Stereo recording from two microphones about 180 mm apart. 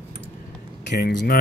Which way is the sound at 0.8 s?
75° left (ahead or behind).